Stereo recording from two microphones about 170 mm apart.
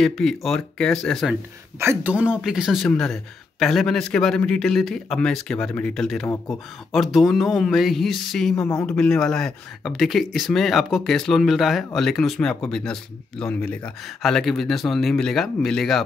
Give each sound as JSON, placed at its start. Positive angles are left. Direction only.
{"t": 0.0, "sound": "speech", "side_deg": 0}
{"t": 1.8, "sound": "speech", "side_deg": -10}